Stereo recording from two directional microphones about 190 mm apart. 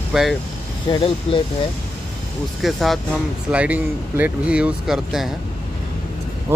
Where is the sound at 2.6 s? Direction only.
Centre (ahead or behind).